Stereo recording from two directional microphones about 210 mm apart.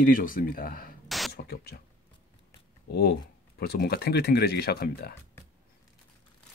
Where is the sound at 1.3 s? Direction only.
50° left (ahead or behind).